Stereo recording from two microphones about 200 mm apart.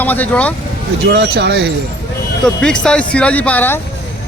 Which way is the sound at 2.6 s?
5° left (ahead or behind).